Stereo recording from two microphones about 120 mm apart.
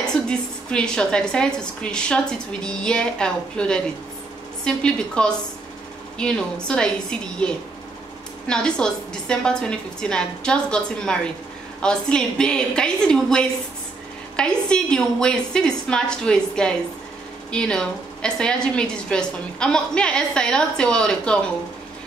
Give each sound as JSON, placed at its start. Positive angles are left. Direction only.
{"t": 0.3, "sound": "a woman's voice", "side_deg": 10}